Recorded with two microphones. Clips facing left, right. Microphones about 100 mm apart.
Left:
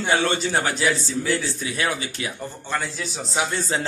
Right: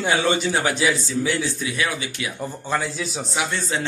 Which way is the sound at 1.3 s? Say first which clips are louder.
Right 1 dB; 40° left (ahead or behind).